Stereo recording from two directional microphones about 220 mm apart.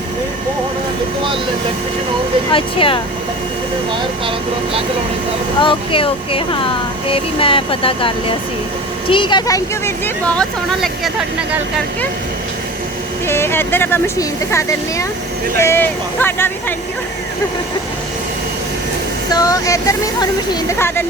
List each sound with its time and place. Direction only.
2.5 s speech: 25° left (ahead or behind)
5.5 s speech: 25° left (ahead or behind); by 11.6 s 5° right (ahead or behind)
13.2 s speech: 10° left (ahead or behind)
19.3 s speech: 15° left (ahead or behind)